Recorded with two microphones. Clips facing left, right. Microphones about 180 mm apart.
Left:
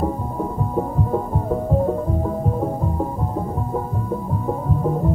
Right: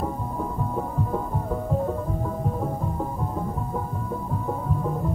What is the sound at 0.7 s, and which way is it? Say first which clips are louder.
Music: left 7 dB; 30° left (ahead or behind).